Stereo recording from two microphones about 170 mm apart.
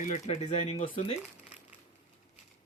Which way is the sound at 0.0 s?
50° left (ahead or behind).